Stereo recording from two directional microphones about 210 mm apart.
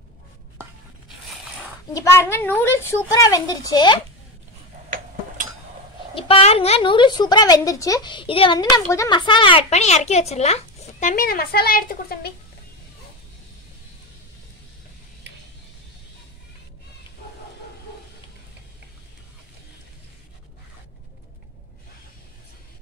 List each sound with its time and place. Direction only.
2.0 s a woman's voice: 10° left (ahead or behind)
4.8 s tick-tock: 40° right (ahead or behind)
6.1 s a woman's voice: 25° left (ahead or behind); by 12.3 s 45° left (ahead or behind)